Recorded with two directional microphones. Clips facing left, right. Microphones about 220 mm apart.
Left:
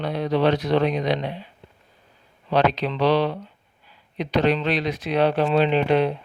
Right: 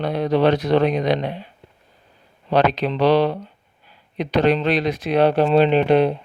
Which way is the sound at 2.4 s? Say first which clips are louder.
Right 3 dB; 50° right (ahead or behind).